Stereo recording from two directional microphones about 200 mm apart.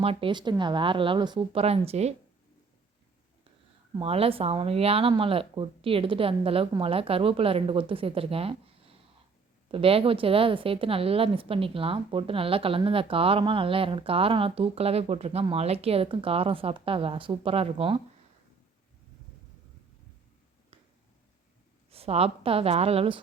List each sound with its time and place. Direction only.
0.0 s a woman's voice: 30° right (ahead or behind)
3.9 s a woman's voice: 30° right (ahead or behind)
21.8 s a woman's voice: 30° right (ahead or behind)